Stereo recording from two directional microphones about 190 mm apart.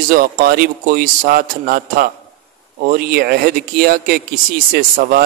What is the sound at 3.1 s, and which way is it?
Speech, 55° right (ahead or behind).